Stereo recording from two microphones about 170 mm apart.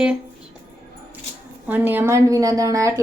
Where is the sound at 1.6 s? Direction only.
10° right (ahead or behind).